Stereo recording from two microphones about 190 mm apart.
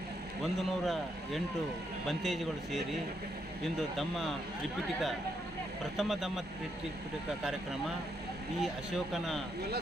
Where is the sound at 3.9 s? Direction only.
Centre (ahead or behind).